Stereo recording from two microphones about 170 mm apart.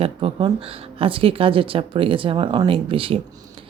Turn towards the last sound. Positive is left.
turn(degrees=-30)  # may be behind; listen again after turning